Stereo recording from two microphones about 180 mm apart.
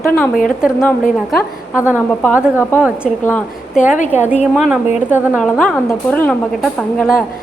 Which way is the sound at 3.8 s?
45° left (ahead or behind).